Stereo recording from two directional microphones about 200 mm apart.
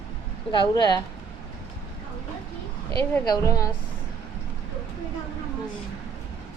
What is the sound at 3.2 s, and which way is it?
Speech, 20° left (ahead or behind).